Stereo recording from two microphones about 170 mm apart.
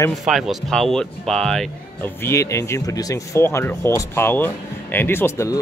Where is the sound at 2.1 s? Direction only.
15° left (ahead or behind).